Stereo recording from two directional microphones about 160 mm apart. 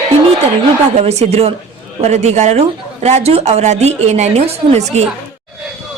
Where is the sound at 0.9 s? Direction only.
40° right (ahead or behind).